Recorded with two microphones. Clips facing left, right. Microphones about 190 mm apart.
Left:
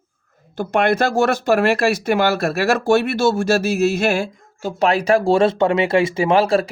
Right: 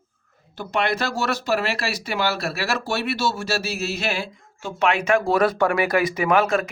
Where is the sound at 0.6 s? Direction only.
50° left (ahead or behind).